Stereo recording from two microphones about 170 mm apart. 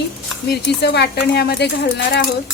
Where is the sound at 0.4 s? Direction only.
70° left (ahead or behind).